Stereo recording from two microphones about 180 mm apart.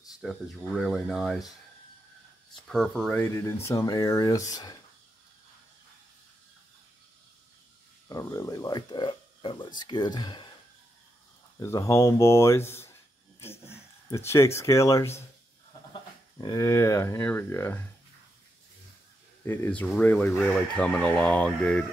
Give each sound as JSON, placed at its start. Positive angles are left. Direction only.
{"t": 0.2, "sound": "speech", "side_deg": 0}
{"t": 2.7, "sound": "speech", "side_deg": 0}
{"t": 8.1, "sound": "speech", "side_deg": 20}
{"t": 11.6, "sound": "speech", "side_deg": 15}
{"t": 19.4, "sound": "speech", "side_deg": 10}